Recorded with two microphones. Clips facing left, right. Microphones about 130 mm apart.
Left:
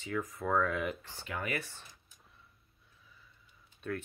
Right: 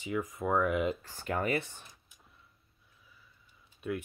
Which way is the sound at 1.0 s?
45° right (ahead or behind).